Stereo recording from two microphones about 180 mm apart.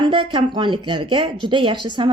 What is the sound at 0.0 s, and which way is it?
Speech, 25° right (ahead or behind).